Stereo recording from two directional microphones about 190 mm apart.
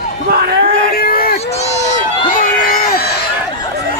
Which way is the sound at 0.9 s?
50° left (ahead or behind).